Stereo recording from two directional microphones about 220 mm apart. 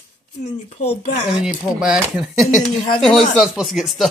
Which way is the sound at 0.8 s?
30° left (ahead or behind).